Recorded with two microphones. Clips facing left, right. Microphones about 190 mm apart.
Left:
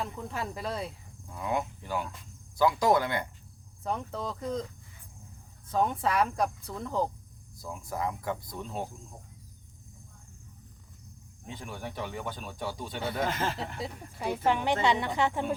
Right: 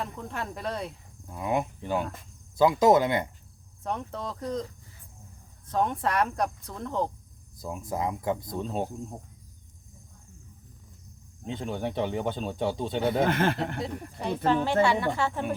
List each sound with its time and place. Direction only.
0.0 s speech: centre (ahead or behind)
1.3 s speech: 20° right (ahead or behind)
3.8 s speech: centre (ahead or behind)
5.6 s speech: centre (ahead or behind)
7.6 s speech: 20° right (ahead or behind)
11.4 s speech: 25° right (ahead or behind)
13.2 s speech: 60° right (ahead or behind)
13.8 s speech: 10° left (ahead or behind)